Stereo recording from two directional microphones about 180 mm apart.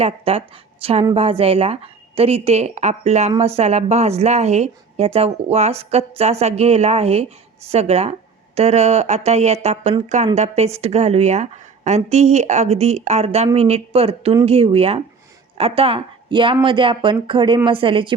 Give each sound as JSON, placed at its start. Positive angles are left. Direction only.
{"t": 0.0, "sound": "a woman's voice", "side_deg": -30}